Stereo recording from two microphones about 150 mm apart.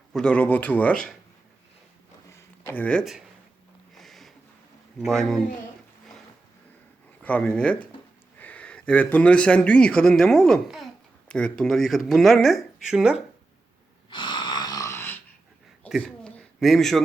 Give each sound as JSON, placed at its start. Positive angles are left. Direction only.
{"t": 0.1, "sound": "speech", "side_deg": 5}
{"t": 2.3, "sound": "a sound", "side_deg": 15}
{"t": 4.9, "sound": "speech", "side_deg": 5}
{"t": 7.2, "sound": "speech", "side_deg": 10}
{"t": 14.1, "sound": "wheeze", "side_deg": 35}
{"t": 15.9, "sound": "a sound", "side_deg": 0}